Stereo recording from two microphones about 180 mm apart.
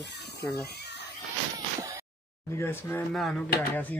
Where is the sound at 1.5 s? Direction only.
20° right (ahead or behind).